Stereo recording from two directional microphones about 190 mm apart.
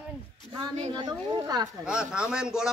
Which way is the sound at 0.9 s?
20° right (ahead or behind).